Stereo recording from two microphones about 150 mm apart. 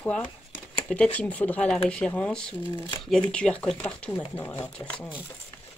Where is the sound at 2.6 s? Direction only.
35° left (ahead or behind).